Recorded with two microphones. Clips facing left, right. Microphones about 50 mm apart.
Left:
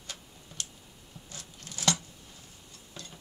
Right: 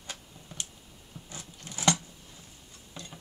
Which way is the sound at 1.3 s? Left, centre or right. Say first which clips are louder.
Right 2 dB; right.